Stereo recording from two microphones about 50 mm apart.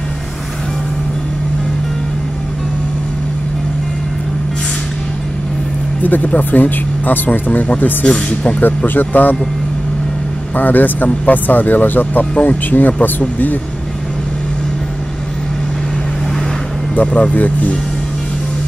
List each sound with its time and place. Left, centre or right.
6.0 s speech: left
8.6 s speech: left
10.5 s speech: left
16.9 s speech: left